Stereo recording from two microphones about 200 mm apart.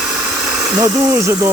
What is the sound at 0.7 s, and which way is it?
Speech, 15° right (ahead or behind).